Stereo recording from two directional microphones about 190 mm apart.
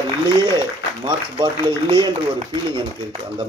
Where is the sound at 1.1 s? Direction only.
25° right (ahead or behind).